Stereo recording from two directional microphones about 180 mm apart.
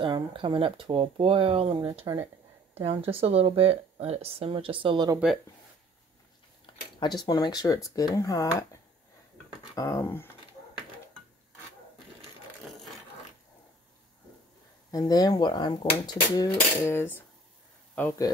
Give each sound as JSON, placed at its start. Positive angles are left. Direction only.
{"t": 0.0, "sound": "speech", "side_deg": -30}
{"t": 6.6, "sound": "speech", "side_deg": 25}
{"t": 9.8, "sound": "speech", "side_deg": 15}
{"t": 14.9, "sound": "speech", "side_deg": 20}